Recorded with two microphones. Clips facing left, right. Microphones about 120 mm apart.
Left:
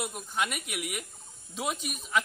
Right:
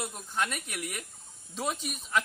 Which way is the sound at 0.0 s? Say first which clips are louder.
Left 1 dB; 10° left (ahead or behind).